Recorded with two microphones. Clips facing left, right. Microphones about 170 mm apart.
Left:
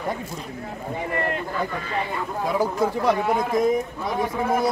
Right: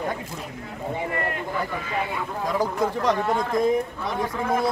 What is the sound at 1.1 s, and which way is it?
Speech, 25° left (ahead or behind).